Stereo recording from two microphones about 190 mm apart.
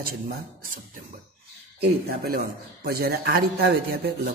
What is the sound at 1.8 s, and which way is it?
A man's voice, 55° right (ahead or behind).